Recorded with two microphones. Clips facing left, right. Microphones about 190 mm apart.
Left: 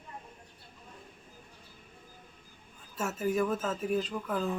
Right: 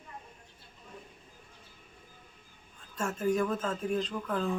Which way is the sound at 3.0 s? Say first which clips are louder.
Right 1 dB; 5° left (ahead or behind).